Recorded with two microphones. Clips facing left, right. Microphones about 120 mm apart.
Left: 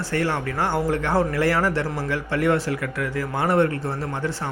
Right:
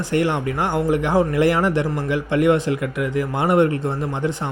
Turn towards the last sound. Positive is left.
turn(degrees=-20)  # may be behind; listen again after turning